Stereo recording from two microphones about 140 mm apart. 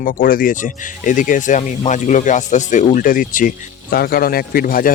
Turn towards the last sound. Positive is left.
turn(degrees=90)